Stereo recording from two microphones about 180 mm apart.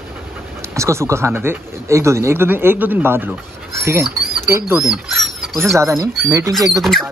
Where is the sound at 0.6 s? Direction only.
15° right (ahead or behind).